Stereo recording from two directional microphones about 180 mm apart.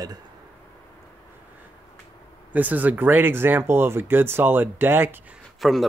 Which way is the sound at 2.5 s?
10° right (ahead or behind).